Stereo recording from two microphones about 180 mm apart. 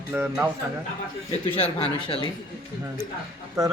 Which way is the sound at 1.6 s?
30° left (ahead or behind).